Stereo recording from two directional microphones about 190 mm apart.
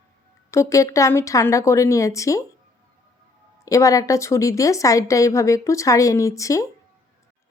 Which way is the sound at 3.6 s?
15° left (ahead or behind).